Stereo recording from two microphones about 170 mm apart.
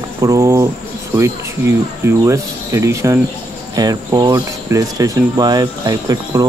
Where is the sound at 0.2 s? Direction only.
20° right (ahead or behind).